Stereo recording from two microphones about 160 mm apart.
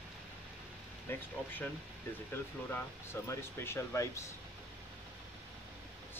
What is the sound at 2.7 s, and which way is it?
Speech, 15° left (ahead or behind).